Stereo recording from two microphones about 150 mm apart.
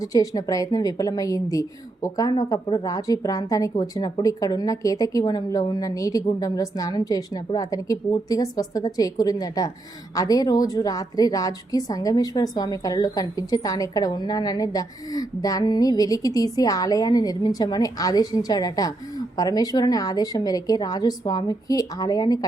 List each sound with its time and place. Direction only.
0.0 s a woman's voice: 25° left (ahead or behind)